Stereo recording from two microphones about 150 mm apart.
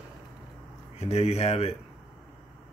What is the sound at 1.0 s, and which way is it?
Speech, 45° left (ahead or behind).